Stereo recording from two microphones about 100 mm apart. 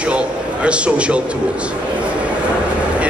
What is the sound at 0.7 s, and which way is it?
Speech, 10° right (ahead or behind).